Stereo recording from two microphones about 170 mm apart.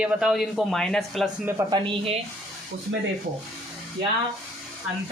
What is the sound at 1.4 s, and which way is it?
Speech, 20° right (ahead or behind).